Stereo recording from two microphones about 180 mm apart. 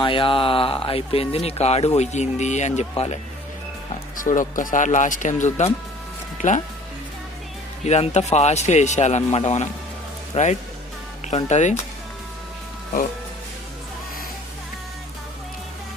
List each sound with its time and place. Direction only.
0.0 s speech: 30° left (ahead or behind)
4.2 s speech: 45° left (ahead or behind)
7.9 s speech: 40° left (ahead or behind)